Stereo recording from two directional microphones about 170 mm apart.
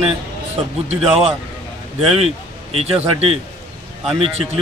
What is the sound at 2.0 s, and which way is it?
Speech, 35° right (ahead or behind).